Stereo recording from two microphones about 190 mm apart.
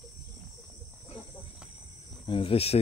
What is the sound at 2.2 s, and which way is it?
Cricket, 30° left (ahead or behind).